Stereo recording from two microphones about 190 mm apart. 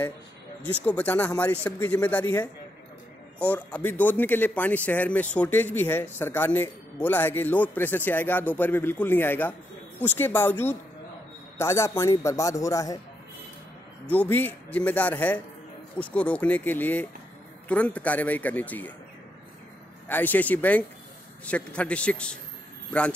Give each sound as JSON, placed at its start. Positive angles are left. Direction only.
{"t": 0.6, "sound": "speech", "side_deg": 10}
{"t": 3.3, "sound": "speech", "side_deg": 5}
{"t": 14.0, "sound": "speech", "side_deg": 10}
{"t": 20.1, "sound": "speech", "side_deg": 10}